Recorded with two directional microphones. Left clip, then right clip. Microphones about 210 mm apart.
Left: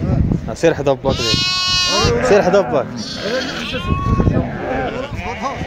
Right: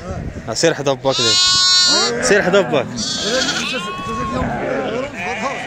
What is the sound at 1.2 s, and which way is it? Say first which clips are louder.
Goat: right 4 dB; 30° left (ahead or behind).